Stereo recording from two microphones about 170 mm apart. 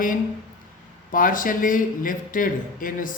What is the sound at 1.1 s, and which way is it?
A man's voice, 55° left (ahead or behind).